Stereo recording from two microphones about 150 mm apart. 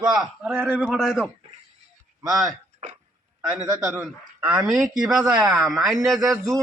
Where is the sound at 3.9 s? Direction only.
10° right (ahead or behind).